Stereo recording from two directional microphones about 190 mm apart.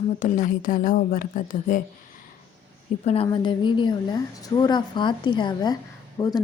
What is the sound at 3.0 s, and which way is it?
A woman's voice, 30° left (ahead or behind).